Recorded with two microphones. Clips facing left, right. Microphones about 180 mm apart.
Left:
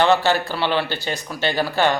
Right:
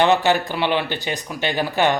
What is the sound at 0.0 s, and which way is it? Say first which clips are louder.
A man's voice: even; 15° right (ahead or behind).